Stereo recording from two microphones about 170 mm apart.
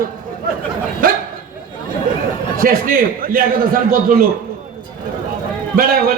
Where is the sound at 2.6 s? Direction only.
55° right (ahead or behind).